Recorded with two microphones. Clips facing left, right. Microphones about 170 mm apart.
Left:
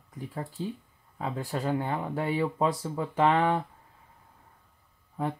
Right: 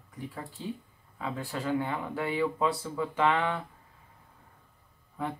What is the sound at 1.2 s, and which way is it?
Speech, 40° left (ahead or behind).